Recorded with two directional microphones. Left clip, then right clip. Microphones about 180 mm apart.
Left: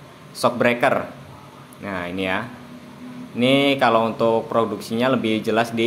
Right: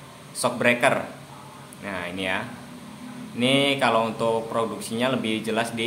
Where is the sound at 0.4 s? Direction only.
25° left (ahead or behind).